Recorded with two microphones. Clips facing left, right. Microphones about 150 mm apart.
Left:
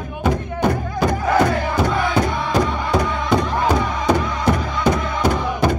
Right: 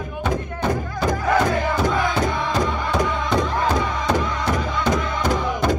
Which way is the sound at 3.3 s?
10° left (ahead or behind).